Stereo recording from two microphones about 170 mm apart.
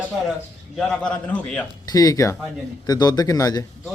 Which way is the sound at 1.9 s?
20° left (ahead or behind).